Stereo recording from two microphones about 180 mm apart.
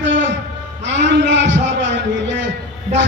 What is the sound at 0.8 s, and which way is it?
A man's voice, 85° right.